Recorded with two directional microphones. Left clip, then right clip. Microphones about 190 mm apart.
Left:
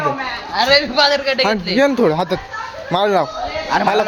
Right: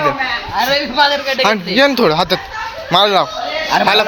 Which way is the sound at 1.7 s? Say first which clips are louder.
Right 2 dB; 15° left (ahead or behind).